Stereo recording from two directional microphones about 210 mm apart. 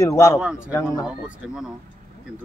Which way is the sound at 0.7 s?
15° left (ahead or behind).